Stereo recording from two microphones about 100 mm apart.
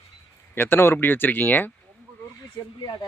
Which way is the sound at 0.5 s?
20° left (ahead or behind).